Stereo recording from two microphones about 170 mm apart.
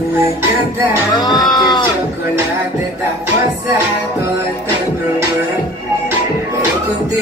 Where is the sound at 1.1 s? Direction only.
25° left (ahead or behind).